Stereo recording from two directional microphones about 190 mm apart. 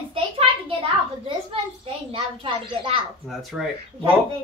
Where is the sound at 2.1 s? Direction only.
25° right (ahead or behind).